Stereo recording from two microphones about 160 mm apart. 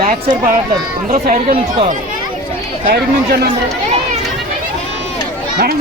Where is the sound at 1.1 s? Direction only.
60° right (ahead or behind).